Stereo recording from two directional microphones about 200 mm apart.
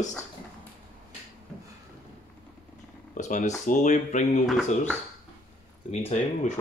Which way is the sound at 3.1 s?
40° left (ahead or behind).